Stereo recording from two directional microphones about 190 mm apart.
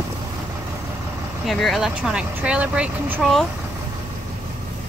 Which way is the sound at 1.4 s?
Centre (ahead or behind).